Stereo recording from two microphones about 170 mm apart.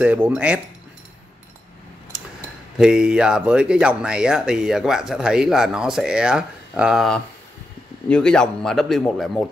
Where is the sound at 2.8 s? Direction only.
5° right (ahead or behind).